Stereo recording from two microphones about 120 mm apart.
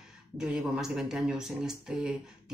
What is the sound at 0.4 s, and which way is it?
Speech, 5° right (ahead or behind).